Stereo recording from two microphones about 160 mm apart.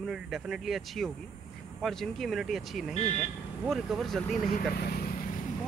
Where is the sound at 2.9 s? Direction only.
45° left (ahead or behind).